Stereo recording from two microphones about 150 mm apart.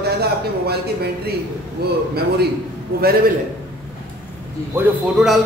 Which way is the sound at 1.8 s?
90° right.